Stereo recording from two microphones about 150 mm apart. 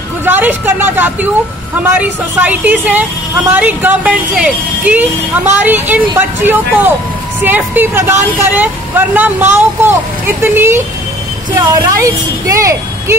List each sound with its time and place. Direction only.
0.2 s speech: 10° right (ahead or behind)
11.5 s a woman's voice: 25° right (ahead or behind)